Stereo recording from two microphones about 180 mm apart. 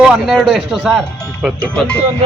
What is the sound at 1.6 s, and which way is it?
Speech, 5° left (ahead or behind).